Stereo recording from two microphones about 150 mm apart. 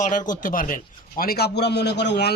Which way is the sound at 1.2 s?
85° left.